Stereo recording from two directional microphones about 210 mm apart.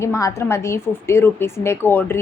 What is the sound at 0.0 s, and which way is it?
A woman's voice, 15° left (ahead or behind).